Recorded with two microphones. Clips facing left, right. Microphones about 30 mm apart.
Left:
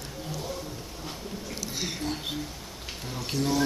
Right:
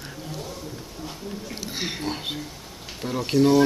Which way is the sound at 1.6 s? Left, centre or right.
Right.